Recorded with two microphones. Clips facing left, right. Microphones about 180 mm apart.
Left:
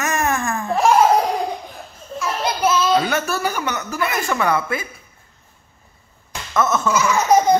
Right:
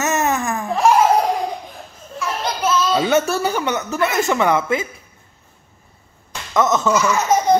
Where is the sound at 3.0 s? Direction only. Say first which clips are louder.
Right 4 dB; 25° right (ahead or behind).